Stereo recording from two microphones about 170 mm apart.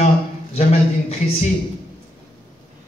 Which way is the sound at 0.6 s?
40° left (ahead or behind).